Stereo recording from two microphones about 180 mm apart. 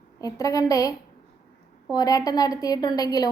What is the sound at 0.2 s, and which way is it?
A woman's voice, 20° left (ahead or behind).